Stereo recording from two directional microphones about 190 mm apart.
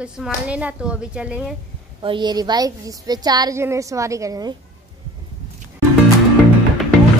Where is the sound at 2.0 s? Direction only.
25° right (ahead or behind).